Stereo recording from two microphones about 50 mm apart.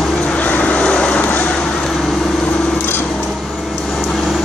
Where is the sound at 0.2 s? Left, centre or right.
Left.